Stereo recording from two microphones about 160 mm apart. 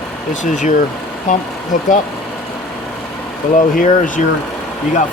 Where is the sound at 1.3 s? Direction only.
50° left (ahead or behind).